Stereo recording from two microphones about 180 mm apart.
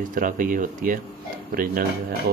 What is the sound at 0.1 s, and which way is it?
Speech, 50° right (ahead or behind).